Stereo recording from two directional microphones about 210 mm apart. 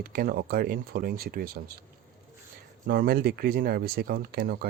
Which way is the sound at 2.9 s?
45° right (ahead or behind).